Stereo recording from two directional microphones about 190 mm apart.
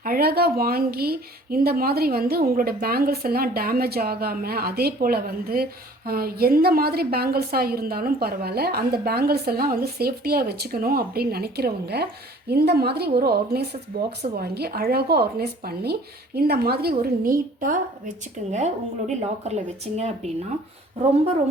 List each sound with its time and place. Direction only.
0.0 s a woman's voice: 50° right (ahead or behind); by 20.3 s 35° right (ahead or behind)